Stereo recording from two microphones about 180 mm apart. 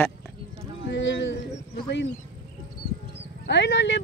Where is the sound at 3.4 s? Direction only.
75° left (ahead or behind).